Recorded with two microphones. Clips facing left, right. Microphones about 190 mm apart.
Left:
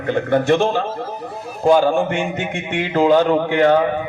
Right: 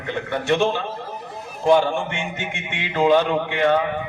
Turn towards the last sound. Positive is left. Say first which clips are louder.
# left 5 dB
turn(degrees=45)  # may be behind; listen again after turning